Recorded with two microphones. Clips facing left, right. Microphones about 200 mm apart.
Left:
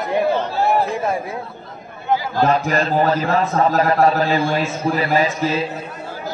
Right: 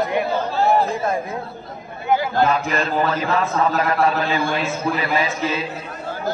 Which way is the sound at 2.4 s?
40° left (ahead or behind).